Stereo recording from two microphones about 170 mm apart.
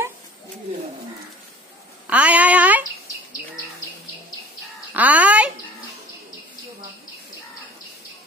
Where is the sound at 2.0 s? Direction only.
10° right (ahead or behind).